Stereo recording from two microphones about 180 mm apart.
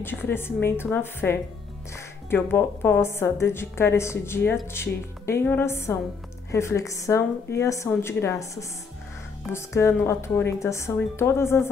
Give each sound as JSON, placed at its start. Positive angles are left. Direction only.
{"t": 0.0, "sound": "a woman's voice", "side_deg": 10}